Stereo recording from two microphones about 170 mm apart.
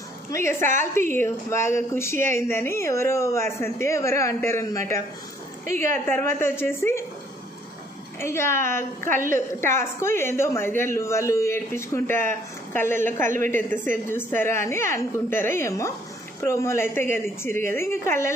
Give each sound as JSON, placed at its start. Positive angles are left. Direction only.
{"t": 0.3, "sound": "a woman's voice", "side_deg": 15}
{"t": 8.2, "sound": "a woman's voice", "side_deg": 15}